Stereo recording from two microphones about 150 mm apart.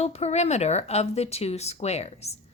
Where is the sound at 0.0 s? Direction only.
45° left (ahead or behind).